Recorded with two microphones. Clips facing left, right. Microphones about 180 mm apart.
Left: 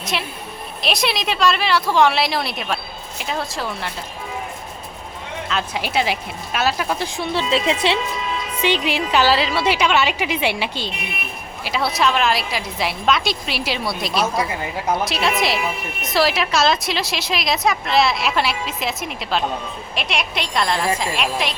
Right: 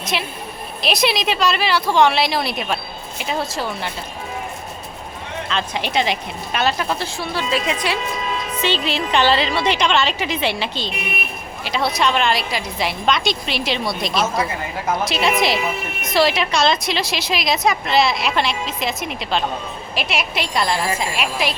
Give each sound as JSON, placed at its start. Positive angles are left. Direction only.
{"t": 0.0, "sound": "a woman's voice", "side_deg": 0}
{"t": 5.5, "sound": "a woman's voice", "side_deg": 5}
{"t": 7.3, "sound": "speech", "side_deg": 25}
{"t": 8.6, "sound": "a woman's voice", "side_deg": 15}